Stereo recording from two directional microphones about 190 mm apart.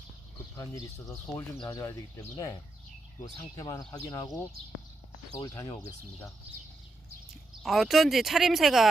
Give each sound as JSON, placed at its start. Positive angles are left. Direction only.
{"t": 0.5, "sound": "speech", "side_deg": 20}
{"t": 5.4, "sound": "speech", "side_deg": 15}
{"t": 7.6, "sound": "speech", "side_deg": 0}